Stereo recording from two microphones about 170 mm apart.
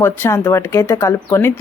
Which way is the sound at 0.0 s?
15° left (ahead or behind).